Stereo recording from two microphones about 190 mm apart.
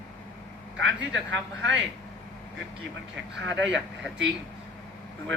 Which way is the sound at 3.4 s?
70° right (ahead or behind).